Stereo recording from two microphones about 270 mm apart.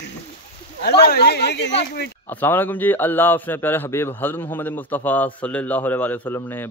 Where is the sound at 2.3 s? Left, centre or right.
Centre.